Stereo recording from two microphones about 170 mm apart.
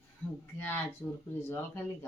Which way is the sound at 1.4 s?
15° left (ahead or behind).